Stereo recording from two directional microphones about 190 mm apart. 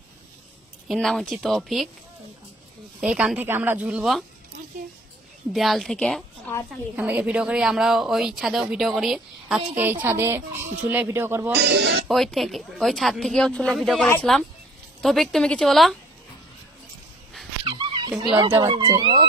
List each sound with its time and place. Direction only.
0.8 s a woman's voice: centre (ahead or behind)
3.0 s a woman's voice: 5° right (ahead or behind)
5.5 s a woman's voice: centre (ahead or behind)
11.5 s speech: 60° right (ahead or behind)
12.1 s a woman's voice: centre (ahead or behind)
17.6 s dog: 25° right (ahead or behind)
18.1 s a woman's voice: 5° right (ahead or behind)
18.6 s speech: 25° right (ahead or behind)